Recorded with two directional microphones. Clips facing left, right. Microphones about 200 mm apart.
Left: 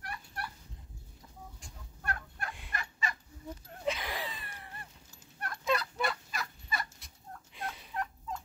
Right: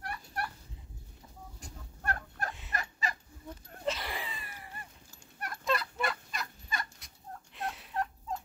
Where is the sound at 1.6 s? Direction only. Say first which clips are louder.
Right 4 dB; 40° right (ahead or behind).